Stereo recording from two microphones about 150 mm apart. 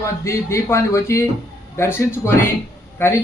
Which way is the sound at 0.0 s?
20° left (ahead or behind).